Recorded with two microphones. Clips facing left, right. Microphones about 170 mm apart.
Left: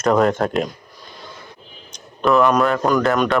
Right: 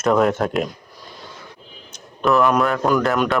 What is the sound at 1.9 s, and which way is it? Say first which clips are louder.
A man's voice: left 1 dB; centre (ahead or behind).